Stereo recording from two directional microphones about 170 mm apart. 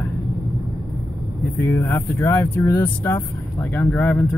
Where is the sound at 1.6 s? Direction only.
10° left (ahead or behind).